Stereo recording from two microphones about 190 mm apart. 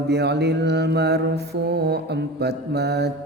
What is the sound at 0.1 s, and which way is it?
Mantra, 60° right (ahead or behind).